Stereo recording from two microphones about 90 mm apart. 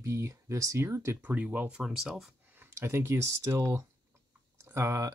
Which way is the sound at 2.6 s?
30° right (ahead or behind).